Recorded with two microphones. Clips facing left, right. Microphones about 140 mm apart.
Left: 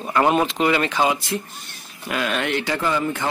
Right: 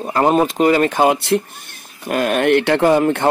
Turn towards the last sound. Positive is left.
turn(degrees=-65)  # may be behind; listen again after turning